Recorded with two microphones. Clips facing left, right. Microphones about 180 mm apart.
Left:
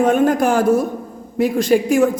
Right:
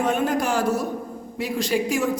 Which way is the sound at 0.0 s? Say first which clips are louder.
Left 8 dB; 50° left (ahead or behind).